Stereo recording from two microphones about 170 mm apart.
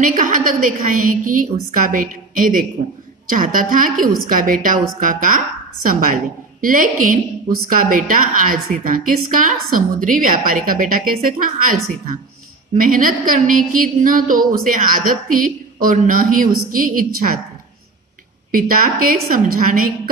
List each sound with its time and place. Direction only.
0.0 s a woman's voice: 50° right (ahead or behind)
18.5 s a woman's voice: 55° right (ahead or behind)